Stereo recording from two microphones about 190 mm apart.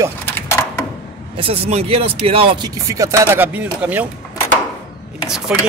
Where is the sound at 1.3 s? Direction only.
30° right (ahead or behind); by 4.1 s 10° right (ahead or behind).